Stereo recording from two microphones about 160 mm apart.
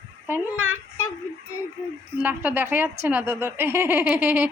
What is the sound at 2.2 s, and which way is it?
Speech, 10° right (ahead or behind).